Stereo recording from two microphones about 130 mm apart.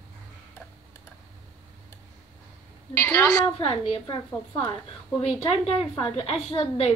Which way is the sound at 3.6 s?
45° left (ahead or behind).